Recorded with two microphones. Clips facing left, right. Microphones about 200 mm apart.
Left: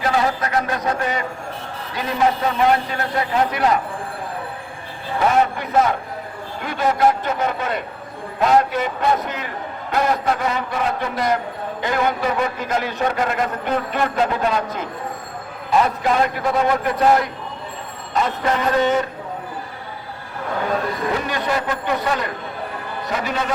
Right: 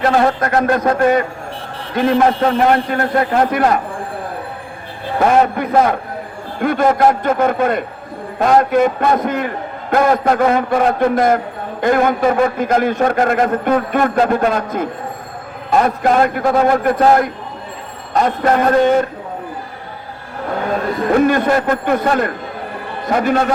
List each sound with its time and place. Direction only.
0.0 s a man's voice: 55° right (ahead or behind)
5.2 s a man's voice: 50° right (ahead or behind)
21.1 s a man's voice: 50° right (ahead or behind)